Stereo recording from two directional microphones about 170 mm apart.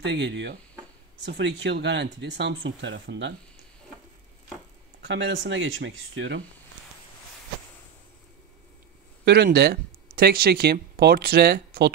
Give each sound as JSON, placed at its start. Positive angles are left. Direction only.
{"t": 0.0, "sound": "speech", "side_deg": -90}
{"t": 5.0, "sound": "speech", "side_deg": -90}
{"t": 9.2, "sound": "speech", "side_deg": -80}